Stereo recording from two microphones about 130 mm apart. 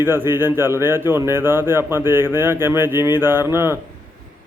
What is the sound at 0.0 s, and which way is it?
Speech, 15° right (ahead or behind).